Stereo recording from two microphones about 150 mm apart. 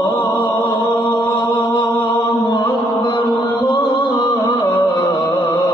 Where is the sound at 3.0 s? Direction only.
30° left (ahead or behind).